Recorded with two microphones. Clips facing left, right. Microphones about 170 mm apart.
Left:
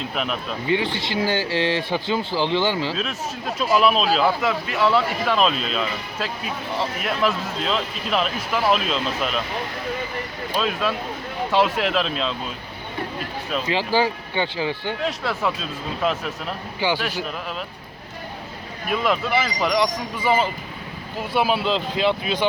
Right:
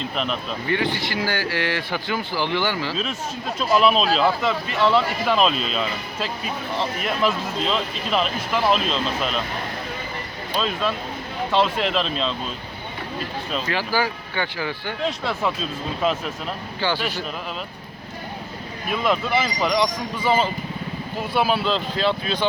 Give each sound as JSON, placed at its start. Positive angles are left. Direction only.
{"t": 0.0, "sound": "speech", "side_deg": 5}
{"t": 0.7, "sound": "speech", "side_deg": 20}
{"t": 2.9, "sound": "speech", "side_deg": 0}
{"t": 10.6, "sound": "speech", "side_deg": 5}
{"t": 13.7, "sound": "speech", "side_deg": 20}
{"t": 15.0, "sound": "speech", "side_deg": 5}
{"t": 16.8, "sound": "speech", "side_deg": 15}
{"t": 18.9, "sound": "speech", "side_deg": 0}